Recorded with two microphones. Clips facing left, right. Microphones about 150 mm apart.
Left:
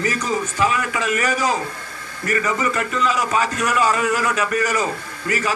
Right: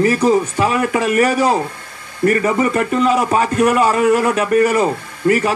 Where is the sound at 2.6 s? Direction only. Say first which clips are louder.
Right 6 dB; 40° right (ahead or behind).